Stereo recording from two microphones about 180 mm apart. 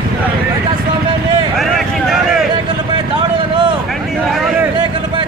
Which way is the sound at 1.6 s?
Centre (ahead or behind).